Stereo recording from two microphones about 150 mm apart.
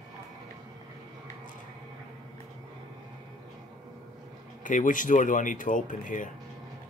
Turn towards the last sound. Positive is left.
turn(degrees=60)  # may be behind; listen again after turning